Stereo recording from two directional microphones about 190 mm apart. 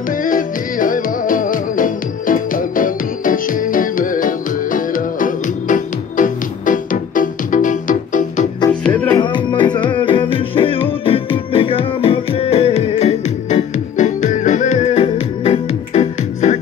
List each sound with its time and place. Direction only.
0.1 s music: 45° left (ahead or behind)
8.8 s music: 10° left (ahead or behind)
9.2 s music: 25° left (ahead or behind)